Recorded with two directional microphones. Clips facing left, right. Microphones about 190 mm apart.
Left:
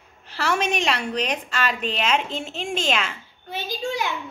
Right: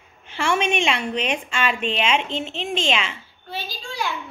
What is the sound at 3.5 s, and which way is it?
Speech, 20° left (ahead or behind).